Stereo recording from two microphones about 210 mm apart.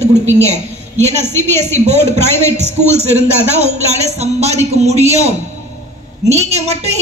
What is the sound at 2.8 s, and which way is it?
Speech, 30° right (ahead or behind).